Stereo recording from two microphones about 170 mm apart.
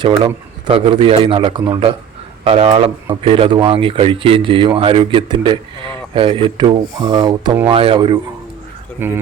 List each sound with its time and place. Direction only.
0.7 s speech: 30° right (ahead or behind)
9.0 s speech: 10° right (ahead or behind)